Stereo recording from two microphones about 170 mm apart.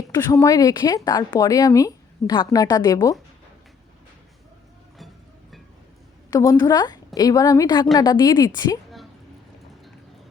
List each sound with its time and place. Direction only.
0.1 s speech: 20° left (ahead or behind)
6.3 s speech: 20° left (ahead or behind)